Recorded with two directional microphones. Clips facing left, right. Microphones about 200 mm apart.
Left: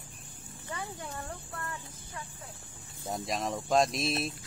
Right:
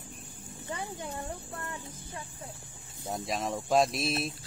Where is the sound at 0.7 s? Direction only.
20° right (ahead or behind).